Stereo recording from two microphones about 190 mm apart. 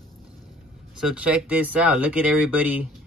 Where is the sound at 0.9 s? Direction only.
5° right (ahead or behind).